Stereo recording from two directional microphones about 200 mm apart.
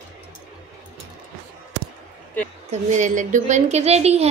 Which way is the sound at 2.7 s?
35° right (ahead or behind).